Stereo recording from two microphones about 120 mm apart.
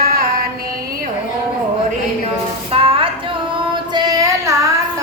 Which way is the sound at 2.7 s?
50° right (ahead or behind).